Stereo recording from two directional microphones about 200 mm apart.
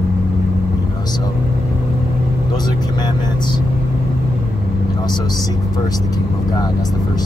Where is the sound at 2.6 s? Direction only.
20° left (ahead or behind).